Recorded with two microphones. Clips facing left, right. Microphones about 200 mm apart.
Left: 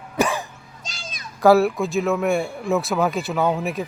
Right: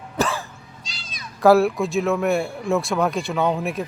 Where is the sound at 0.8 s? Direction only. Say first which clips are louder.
Left 6 dB; 45° left (ahead or behind).